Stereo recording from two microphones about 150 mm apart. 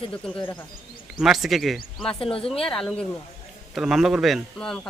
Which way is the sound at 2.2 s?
40° left (ahead or behind).